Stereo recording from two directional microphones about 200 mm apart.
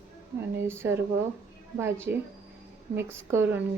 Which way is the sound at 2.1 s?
60° right (ahead or behind).